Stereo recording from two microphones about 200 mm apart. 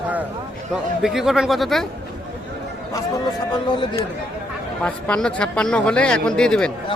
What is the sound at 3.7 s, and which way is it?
Speech, 25° left (ahead or behind).